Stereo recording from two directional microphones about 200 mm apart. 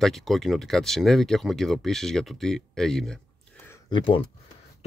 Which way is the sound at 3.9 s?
25° left (ahead or behind).